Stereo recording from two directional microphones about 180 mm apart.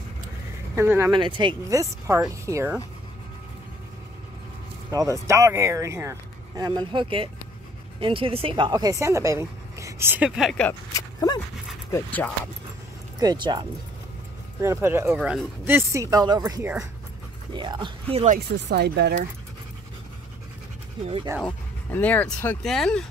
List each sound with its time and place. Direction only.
0.7 s speech: 15° right (ahead or behind)
1.1 s speech: 25° right (ahead or behind)
4.9 s speech: 15° right (ahead or behind)
10.9 s speech: 20° left (ahead or behind)
11.9 s speech: 10° left (ahead or behind)
13.2 s speech: 25° right (ahead or behind)
18.7 s speech: 65° right (ahead or behind)
21.4 s speech: 5° left (ahead or behind)